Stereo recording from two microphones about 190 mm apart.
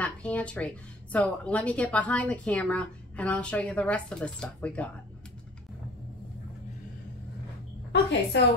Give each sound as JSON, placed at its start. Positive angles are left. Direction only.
{"t": 0.0, "sound": "a woman's voice", "side_deg": 5}
{"t": 7.9, "sound": "a woman's voice", "side_deg": 65}